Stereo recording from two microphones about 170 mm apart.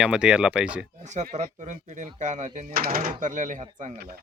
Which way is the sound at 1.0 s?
45° right (ahead or behind).